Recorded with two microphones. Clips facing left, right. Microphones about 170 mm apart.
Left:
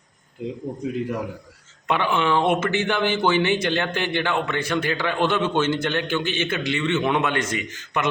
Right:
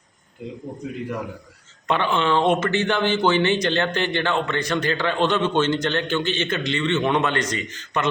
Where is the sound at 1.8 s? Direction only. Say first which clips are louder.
Even; 10° left (ahead or behind).